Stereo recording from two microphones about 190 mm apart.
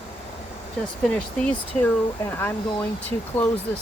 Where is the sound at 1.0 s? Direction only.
5° left (ahead or behind).